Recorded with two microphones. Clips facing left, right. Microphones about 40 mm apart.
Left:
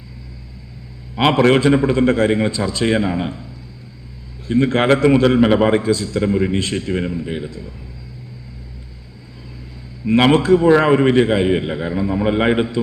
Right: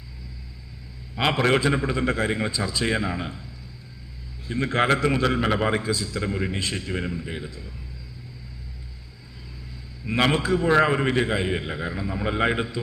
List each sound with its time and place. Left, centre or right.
1.1 s a man's voice: left
4.4 s a man's voice: left
10.1 s a man's voice: left
10.7 s a man's voice: left